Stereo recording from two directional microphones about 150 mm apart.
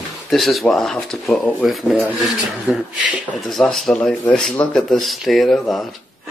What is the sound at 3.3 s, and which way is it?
Speech, centre (ahead or behind).